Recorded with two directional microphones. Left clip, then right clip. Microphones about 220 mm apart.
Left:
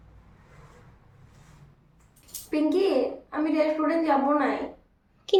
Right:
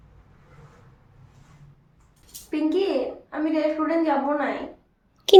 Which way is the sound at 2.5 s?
Centre (ahead or behind).